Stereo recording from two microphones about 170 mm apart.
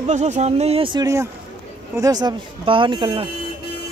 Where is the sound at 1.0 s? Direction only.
15° right (ahead or behind).